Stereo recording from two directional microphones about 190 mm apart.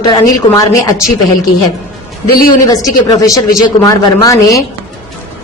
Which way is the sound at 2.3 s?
50° left (ahead or behind).